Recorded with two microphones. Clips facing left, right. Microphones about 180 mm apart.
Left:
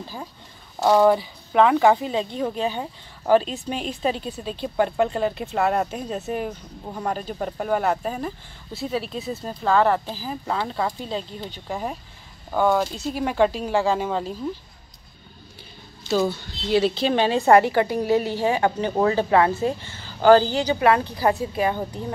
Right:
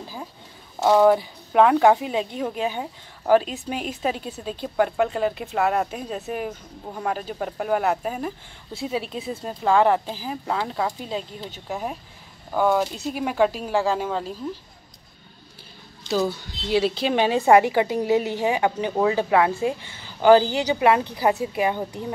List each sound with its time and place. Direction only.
0.8 s a woman's voice: 5° right (ahead or behind)
9.6 s a woman's voice: 15° right (ahead or behind)
16.3 s a woman's voice: 10° right (ahead or behind)